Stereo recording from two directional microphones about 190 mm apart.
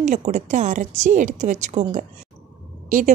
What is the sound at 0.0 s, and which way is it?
A woman's voice, 40° right (ahead or behind).